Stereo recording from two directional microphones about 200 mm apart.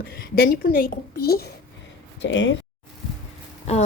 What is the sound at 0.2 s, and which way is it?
A woman's voice, 50° left (ahead or behind).